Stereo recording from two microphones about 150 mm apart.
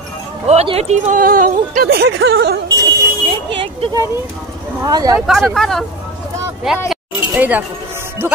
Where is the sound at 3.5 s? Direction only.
35° right (ahead or behind).